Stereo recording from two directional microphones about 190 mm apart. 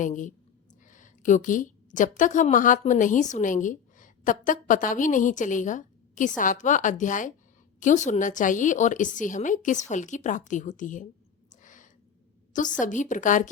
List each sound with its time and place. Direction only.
0.0 s a woman's voice: 40° left (ahead or behind)
10.5 s a sound: 40° left (ahead or behind)
12.8 s a woman's voice: 40° left (ahead or behind)